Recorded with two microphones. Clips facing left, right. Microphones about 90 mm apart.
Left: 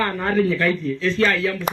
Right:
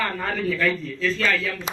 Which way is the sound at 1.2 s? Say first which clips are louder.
Left 5 dB; 50° left (ahead or behind).